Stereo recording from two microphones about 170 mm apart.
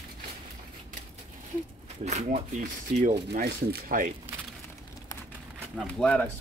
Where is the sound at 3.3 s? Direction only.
60° right (ahead or behind).